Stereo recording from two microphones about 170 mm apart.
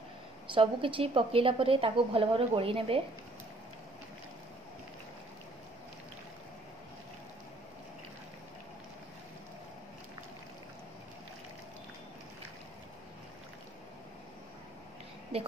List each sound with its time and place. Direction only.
0.5 s a woman's voice: 30° right (ahead or behind)